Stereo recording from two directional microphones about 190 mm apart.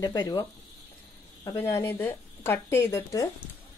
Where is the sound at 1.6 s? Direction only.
15° left (ahead or behind).